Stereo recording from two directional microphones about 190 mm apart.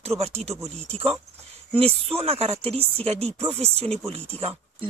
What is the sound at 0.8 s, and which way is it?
Speech, 30° right (ahead or behind).